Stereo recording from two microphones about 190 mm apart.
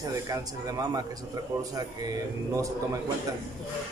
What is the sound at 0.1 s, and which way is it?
A man's voice, 20° right (ahead or behind).